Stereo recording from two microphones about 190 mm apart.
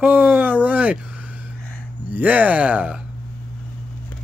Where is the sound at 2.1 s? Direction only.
10° right (ahead or behind).